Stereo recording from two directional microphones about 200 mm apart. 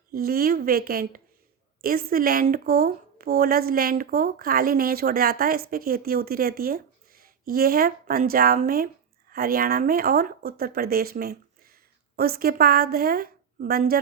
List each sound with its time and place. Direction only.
0.1 s speech: 50° right (ahead or behind)